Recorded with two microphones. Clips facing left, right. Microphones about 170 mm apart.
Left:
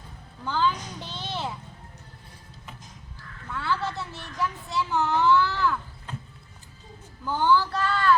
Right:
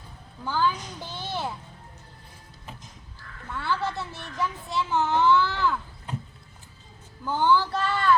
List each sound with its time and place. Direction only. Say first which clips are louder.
0.4 s a child's voice: even; 10° right (ahead or behind)
3.5 s a child's voice: even; 15° right (ahead or behind)
7.3 s a child's voice: even; 15° right (ahead or behind)
7.7 s speech: even; centre (ahead or behind)